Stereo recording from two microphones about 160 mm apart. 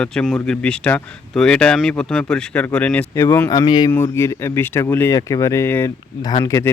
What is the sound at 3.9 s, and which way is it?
Speech, 15° left (ahead or behind).